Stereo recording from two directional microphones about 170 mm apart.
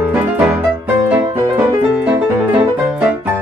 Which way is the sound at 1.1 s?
10° right (ahead or behind).